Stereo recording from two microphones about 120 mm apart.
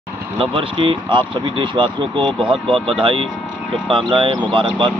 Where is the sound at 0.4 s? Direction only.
50° right (ahead or behind).